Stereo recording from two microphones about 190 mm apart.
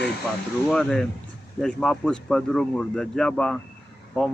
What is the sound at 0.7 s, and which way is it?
Speech, centre (ahead or behind).